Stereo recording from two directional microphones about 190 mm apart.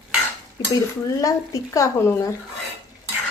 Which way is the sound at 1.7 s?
15° left (ahead or behind).